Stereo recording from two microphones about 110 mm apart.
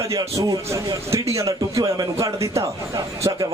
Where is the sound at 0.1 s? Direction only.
30° right (ahead or behind).